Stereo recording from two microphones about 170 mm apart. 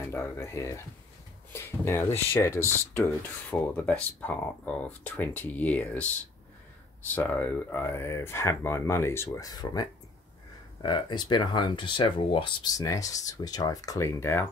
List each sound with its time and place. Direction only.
0.1 s speech: 15° left (ahead or behind)
7.2 s speech: 10° left (ahead or behind)